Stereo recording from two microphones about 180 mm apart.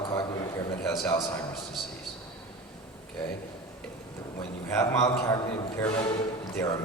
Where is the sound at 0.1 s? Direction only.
15° left (ahead or behind).